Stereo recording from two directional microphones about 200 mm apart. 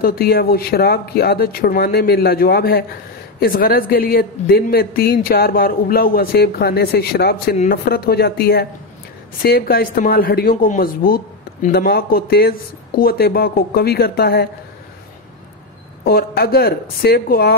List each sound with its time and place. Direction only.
0.0 s speech: 50° left (ahead or behind)
16.0 s speech: 50° left (ahead or behind)